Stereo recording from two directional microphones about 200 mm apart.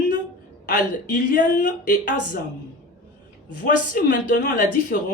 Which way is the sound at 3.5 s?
45° left (ahead or behind).